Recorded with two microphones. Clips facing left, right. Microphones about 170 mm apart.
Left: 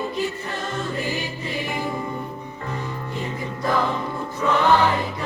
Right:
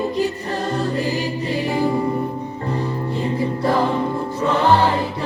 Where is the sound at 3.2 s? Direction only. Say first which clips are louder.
Right 8 dB; 30° right (ahead or behind).